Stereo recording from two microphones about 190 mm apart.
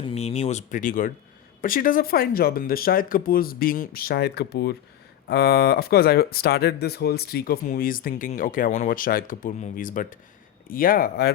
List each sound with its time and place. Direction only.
0.0 s speech: 35° left (ahead or behind); by 11.3 s 50° left (ahead or behind)